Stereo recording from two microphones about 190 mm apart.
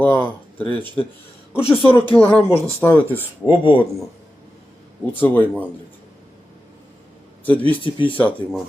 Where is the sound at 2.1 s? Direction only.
5° left (ahead or behind).